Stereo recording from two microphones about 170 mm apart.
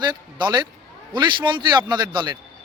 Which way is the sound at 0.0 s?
25° right (ahead or behind).